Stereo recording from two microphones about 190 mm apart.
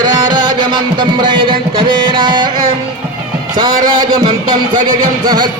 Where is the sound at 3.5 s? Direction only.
20° right (ahead or behind).